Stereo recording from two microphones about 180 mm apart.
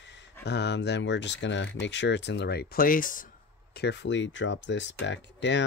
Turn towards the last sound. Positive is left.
turn(degrees=80)